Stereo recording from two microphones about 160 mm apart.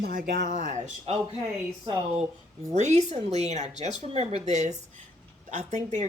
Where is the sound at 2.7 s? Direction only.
45° right (ahead or behind).